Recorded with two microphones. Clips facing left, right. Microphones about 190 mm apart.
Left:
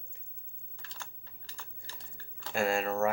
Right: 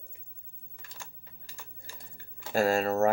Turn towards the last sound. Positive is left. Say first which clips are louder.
# right 4 dB
turn(degrees=-40)  # may be behind; listen again after turning